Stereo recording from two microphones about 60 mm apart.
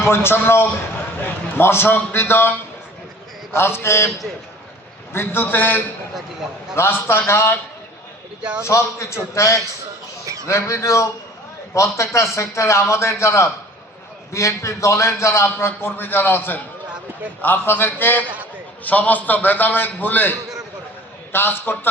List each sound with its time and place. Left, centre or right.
0.1 s a man's voice: left
5.1 s a man's voice: left
6.1 s a man's voice: centre
6.7 s a man's voice: left
8.4 s a man's voice: centre
8.6 s a man's voice: left
21.3 s a man's voice: left